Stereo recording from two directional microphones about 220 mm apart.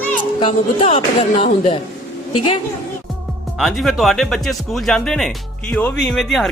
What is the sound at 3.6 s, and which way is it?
Speech, centre (ahead or behind).